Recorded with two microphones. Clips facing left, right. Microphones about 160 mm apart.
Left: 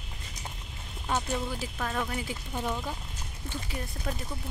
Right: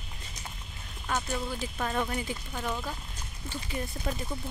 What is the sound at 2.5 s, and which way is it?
Speech, 20° left (ahead or behind).